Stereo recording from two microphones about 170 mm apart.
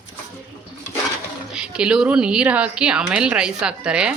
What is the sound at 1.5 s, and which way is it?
A woman's voice, 5° right (ahead or behind).